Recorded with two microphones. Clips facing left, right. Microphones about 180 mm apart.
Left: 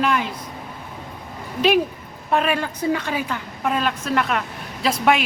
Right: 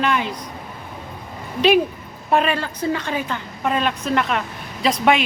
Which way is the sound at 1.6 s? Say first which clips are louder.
Right 2 dB; centre (ahead or behind).